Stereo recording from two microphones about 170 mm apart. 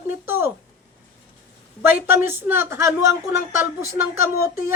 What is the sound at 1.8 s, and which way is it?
A woman's voice, 10° right (ahead or behind).